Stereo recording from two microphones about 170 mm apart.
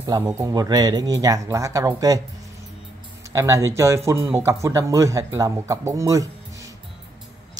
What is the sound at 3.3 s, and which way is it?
Speech, 20° right (ahead or behind).